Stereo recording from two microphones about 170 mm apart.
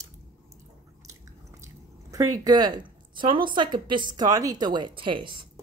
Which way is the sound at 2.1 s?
20° right (ahead or behind).